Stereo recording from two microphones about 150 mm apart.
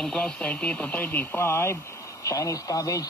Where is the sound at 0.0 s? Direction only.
5° left (ahead or behind).